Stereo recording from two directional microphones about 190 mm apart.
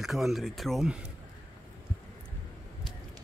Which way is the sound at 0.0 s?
Centre (ahead or behind).